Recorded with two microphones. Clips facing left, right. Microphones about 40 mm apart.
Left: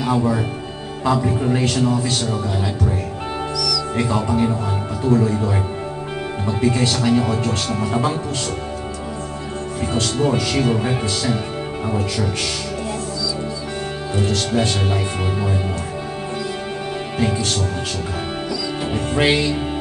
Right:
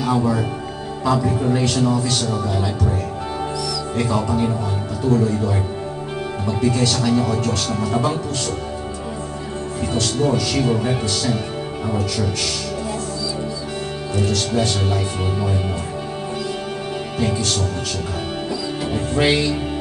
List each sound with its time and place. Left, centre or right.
0.0 s speech: centre
3.9 s speech: left
9.9 s speech: left
14.1 s speech: left
17.2 s speech: left
18.9 s speech: left